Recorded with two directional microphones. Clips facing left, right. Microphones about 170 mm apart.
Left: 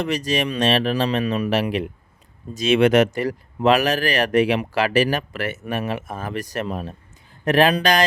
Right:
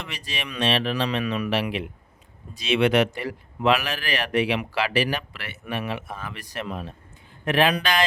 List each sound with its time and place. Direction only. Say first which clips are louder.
0.0 s speech: left 13 dB; 40° left (ahead or behind)